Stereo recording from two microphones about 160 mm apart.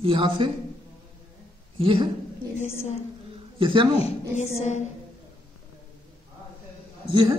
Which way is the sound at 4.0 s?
45° left (ahead or behind).